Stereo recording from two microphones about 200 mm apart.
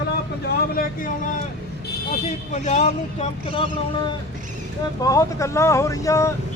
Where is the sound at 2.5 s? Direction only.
35° left (ahead or behind).